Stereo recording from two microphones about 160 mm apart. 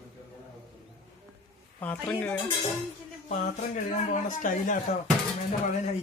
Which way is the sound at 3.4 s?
55° left (ahead or behind).